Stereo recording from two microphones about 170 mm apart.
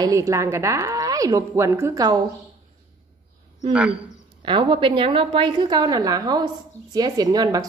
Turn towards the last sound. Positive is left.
turn(degrees=-20)  # may be behind; listen again after turning